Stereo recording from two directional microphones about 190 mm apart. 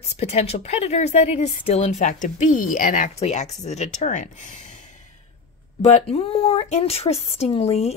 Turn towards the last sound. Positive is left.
turn(degrees=35)  # may be behind; listen again after turning